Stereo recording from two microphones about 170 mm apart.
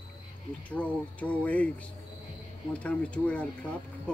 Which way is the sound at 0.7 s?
10° left (ahead or behind).